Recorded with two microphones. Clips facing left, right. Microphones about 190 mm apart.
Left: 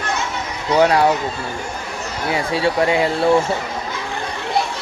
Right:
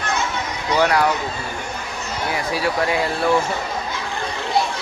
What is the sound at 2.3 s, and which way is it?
Speech, 25° left (ahead or behind).